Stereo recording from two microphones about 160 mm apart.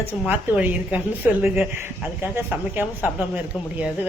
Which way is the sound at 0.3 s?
10° right (ahead or behind).